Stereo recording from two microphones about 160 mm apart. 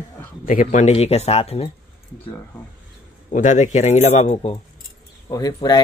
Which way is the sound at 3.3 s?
50° left (ahead or behind).